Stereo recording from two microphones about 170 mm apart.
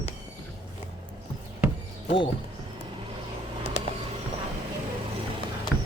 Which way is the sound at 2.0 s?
30° left (ahead or behind).